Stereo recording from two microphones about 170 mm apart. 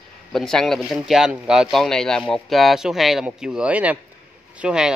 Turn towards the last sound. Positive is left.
turn(degrees=-5)  # may be behind; listen again after turning